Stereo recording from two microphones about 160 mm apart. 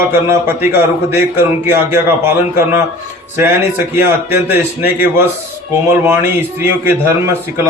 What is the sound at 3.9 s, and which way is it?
A man's voice, 15° right (ahead or behind).